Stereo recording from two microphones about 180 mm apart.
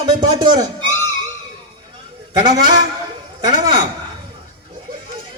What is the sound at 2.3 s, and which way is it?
Speech, 25° right (ahead or behind).